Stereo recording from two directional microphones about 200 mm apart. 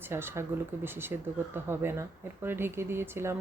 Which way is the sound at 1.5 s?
10° right (ahead or behind).